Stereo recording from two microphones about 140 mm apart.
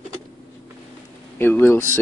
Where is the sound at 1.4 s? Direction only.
15° left (ahead or behind).